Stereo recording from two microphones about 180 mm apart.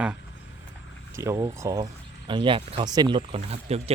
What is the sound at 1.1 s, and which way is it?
Speech, 15° right (ahead or behind).